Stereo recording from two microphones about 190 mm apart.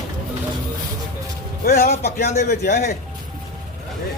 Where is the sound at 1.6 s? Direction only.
50° left (ahead or behind).